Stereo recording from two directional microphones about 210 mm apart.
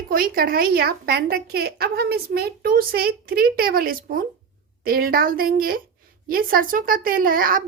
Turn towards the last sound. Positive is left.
turn(degrees=-40)  # may be behind; listen again after turning